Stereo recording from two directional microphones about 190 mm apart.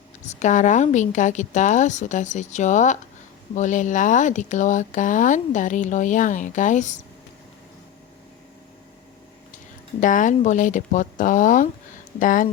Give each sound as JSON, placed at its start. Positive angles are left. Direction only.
{"t": 0.2, "sound": "speech", "side_deg": 40}
{"t": 10.0, "sound": "speech", "side_deg": 45}